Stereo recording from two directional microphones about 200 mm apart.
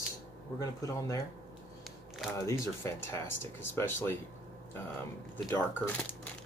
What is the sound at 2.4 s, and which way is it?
Speech, 15° left (ahead or behind).